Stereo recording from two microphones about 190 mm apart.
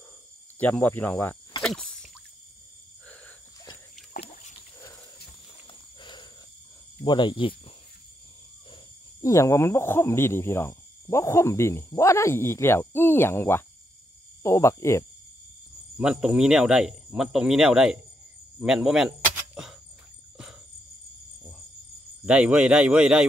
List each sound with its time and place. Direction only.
0.6 s speech: 10° left (ahead or behind)
1.6 s a sound: 5° left (ahead or behind)
4.2 s dog: 35° left (ahead or behind)
4.7 s wild animals: 15° left (ahead or behind)
5.7 s a sound: 25° left (ahead or behind)
7.1 s speech: 25° left (ahead or behind)
9.2 s speech: 15° left (ahead or behind)
16.0 s speech: 5° right (ahead or behind)
18.6 s cricket: 5° right (ahead or behind)
22.2 s speech: 5° right (ahead or behind)